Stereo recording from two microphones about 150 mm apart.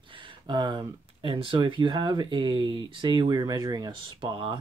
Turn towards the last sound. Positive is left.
turn(degrees=-35)  # may be behind; listen again after turning